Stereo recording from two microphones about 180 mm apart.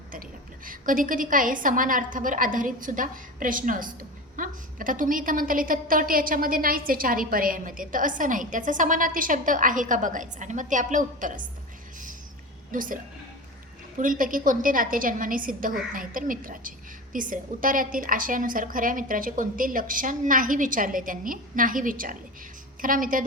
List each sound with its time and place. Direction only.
0.1 s a woman's voice: 50° right (ahead or behind)
12.7 s a woman's voice: 50° right (ahead or behind)
14.0 s a woman's voice: 50° right (ahead or behind)